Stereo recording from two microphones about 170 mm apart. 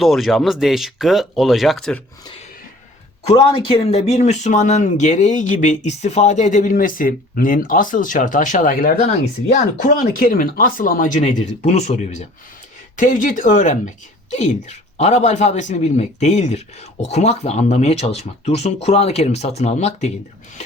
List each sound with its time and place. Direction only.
0.0 s speech: centre (ahead or behind)
3.2 s speech: 35° left (ahead or behind)